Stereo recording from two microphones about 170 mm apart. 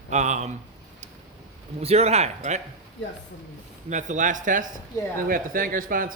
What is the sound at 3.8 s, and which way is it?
A man's voice, 45° right (ahead or behind).